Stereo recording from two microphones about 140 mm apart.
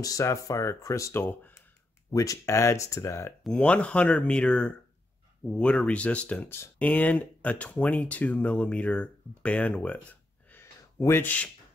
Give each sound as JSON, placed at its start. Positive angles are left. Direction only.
{"t": 0.0, "sound": "speech", "side_deg": 25}
{"t": 3.4, "sound": "speech", "side_deg": 5}
{"t": 10.5, "sound": "a sound", "side_deg": 15}